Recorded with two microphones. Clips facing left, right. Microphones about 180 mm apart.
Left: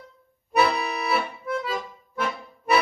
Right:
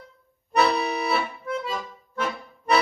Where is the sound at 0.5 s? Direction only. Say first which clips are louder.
Right 1 dB; 5° left (ahead or behind).